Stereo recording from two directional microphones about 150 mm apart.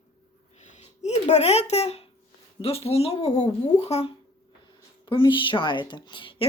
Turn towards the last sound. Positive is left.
turn(degrees=35)  # may be behind; listen again after turning